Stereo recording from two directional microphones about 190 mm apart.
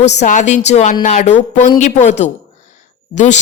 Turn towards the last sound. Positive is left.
turn(degrees=40)  # may be behind; listen again after turning